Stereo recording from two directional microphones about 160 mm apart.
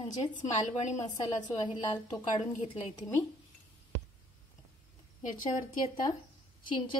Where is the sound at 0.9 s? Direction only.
20° left (ahead or behind).